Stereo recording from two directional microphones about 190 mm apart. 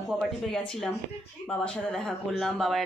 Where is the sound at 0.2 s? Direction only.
Centre (ahead or behind).